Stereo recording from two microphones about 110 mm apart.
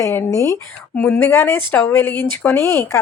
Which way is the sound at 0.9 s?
15° left (ahead or behind).